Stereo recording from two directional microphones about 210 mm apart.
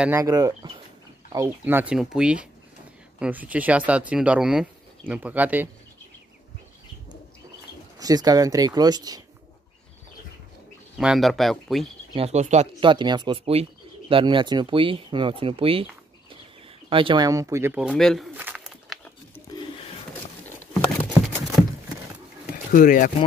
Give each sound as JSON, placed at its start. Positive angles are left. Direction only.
{"t": 0.0, "sound": "speech", "side_deg": -15}
{"t": 8.0, "sound": "speech", "side_deg": -15}
{"t": 11.0, "sound": "speech", "side_deg": 0}
{"t": 12.1, "sound": "speech", "side_deg": -30}
{"t": 18.3, "sound": "a sound", "side_deg": -10}
{"t": 22.7, "sound": "speech", "side_deg": 40}